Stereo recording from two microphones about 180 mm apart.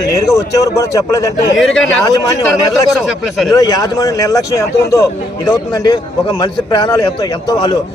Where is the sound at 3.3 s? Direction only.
Centre (ahead or behind).